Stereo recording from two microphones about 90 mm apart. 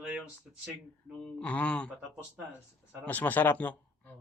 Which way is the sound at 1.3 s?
15° left (ahead or behind).